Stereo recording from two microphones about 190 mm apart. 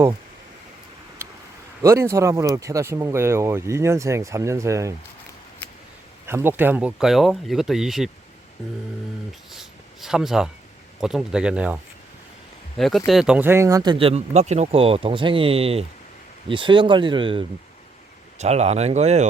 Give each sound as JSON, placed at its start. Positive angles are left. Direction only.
{"t": 1.8, "sound": "speech", "side_deg": -15}
{"t": 6.2, "sound": "speech", "side_deg": -10}
{"t": 9.5, "sound": "a sound", "side_deg": 0}
{"t": 11.0, "sound": "speech", "side_deg": -5}